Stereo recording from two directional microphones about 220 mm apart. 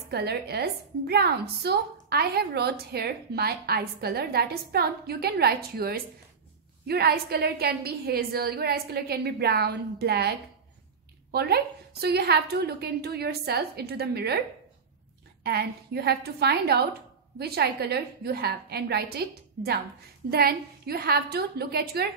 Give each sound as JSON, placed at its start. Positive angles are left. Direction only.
{"t": 0.1, "sound": "a woman's voice", "side_deg": -45}
{"t": 11.3, "sound": "a woman's voice", "side_deg": -45}
{"t": 15.4, "sound": "a woman's voice", "side_deg": -45}